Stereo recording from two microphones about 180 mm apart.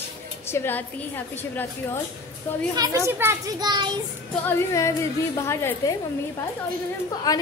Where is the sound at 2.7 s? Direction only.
20° right (ahead or behind).